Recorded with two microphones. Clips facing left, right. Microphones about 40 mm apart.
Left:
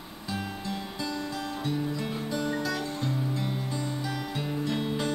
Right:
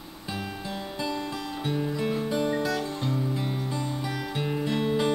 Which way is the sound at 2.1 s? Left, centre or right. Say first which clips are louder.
Right 4 dB; centre.